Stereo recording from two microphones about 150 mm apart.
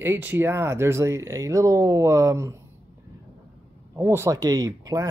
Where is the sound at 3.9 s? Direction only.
20° right (ahead or behind).